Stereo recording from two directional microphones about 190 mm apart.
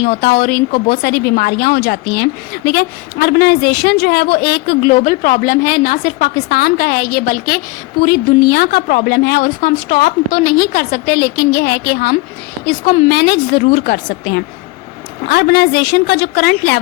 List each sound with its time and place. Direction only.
0.0 s a woman's voice: 60° left (ahead or behind)
12.6 s a woman's voice: 40° left (ahead or behind)
13.1 s a woman's voice: 60° left (ahead or behind)